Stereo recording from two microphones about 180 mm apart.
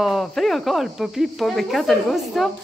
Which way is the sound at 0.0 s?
Centre (ahead or behind).